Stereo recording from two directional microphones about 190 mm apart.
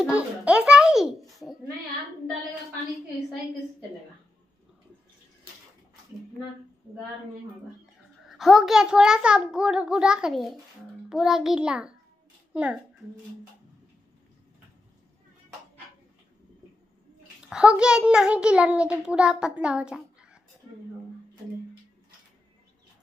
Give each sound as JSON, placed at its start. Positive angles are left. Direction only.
{"t": 0.0, "sound": "a child's voice", "side_deg": -5}
{"t": 8.3, "sound": "a child's voice", "side_deg": 0}
{"t": 17.5, "sound": "a child's voice", "side_deg": -5}